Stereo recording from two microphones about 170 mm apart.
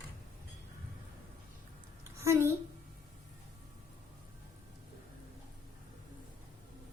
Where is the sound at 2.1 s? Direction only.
15° right (ahead or behind).